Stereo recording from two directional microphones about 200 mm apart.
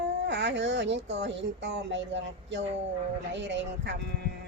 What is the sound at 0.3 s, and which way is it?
Speech, 60° right (ahead or behind).